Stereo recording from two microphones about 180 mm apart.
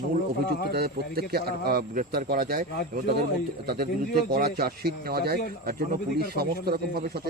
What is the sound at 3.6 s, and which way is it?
Speech, 60° right (ahead or behind).